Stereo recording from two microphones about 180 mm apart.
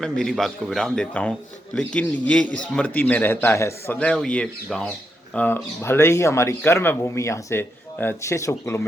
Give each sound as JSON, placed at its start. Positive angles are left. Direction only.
{"t": 0.0, "sound": "a man's voice", "side_deg": 5}